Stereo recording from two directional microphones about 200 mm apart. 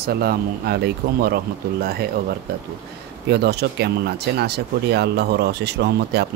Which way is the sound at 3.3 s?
55° right (ahead or behind).